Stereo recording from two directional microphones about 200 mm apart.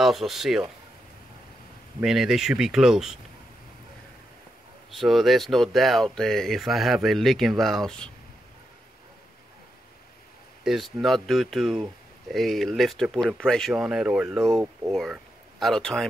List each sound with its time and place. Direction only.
0.0 s speech: centre (ahead or behind)
2.0 s speech: centre (ahead or behind)
4.9 s speech: centre (ahead or behind)
10.6 s speech: centre (ahead or behind)